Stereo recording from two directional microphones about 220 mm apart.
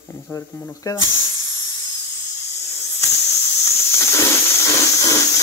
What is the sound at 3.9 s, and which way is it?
Hiss, 10° left (ahead or behind).